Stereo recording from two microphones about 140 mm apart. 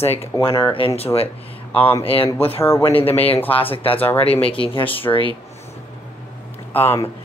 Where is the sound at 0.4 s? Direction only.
30° left (ahead or behind).